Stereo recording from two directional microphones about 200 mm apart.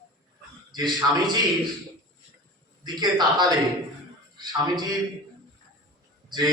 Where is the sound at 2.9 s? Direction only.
20° right (ahead or behind).